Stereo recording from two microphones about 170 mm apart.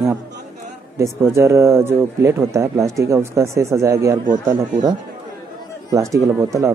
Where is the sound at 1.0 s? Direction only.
15° right (ahead or behind).